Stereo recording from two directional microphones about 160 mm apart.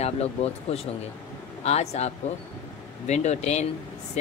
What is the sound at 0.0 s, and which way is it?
Speech, 40° left (ahead or behind).